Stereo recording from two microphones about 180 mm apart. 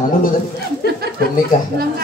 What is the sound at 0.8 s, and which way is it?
Speech, 60° left (ahead or behind).